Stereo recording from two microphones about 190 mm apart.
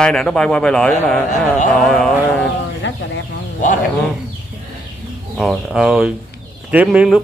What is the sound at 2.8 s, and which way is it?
Chicken, 70° left (ahead or behind).